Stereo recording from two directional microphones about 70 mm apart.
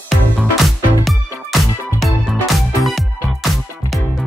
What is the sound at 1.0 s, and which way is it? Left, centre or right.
Music, centre.